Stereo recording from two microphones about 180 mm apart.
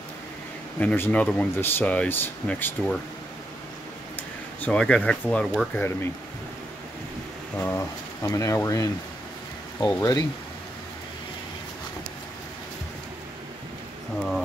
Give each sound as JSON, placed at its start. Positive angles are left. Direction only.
{"t": 0.7, "sound": "speech", "side_deg": 10}
{"t": 4.6, "sound": "speech", "side_deg": 5}
{"t": 7.6, "sound": "speech", "side_deg": 15}
{"t": 14.1, "sound": "speech", "side_deg": 0}